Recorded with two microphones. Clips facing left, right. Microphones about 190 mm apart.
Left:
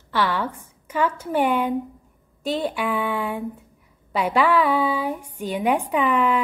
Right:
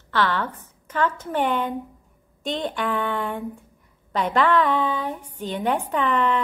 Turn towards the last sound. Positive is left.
turn(degrees=10)  # may be behind; listen again after turning